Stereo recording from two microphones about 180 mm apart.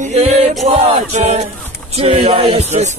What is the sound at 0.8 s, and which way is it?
Choir, 35° right (ahead or behind).